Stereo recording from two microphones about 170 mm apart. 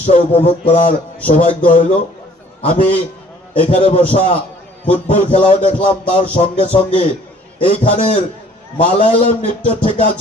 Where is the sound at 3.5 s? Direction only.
35° left (ahead or behind).